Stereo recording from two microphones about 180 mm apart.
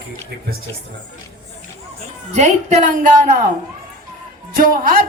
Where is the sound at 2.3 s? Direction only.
40° right (ahead or behind).